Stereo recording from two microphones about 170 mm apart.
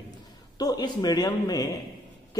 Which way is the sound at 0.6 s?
25° left (ahead or behind).